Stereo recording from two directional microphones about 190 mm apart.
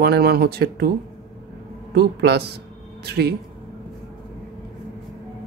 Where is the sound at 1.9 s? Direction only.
60° right (ahead or behind).